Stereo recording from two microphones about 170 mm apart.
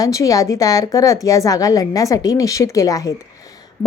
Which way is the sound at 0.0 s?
20° left (ahead or behind).